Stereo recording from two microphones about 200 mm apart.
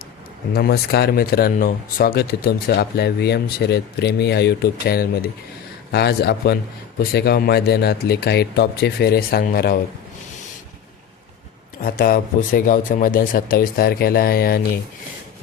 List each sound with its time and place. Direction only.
0.5 s speech: 50° left (ahead or behind)
11.8 s speech: 45° left (ahead or behind)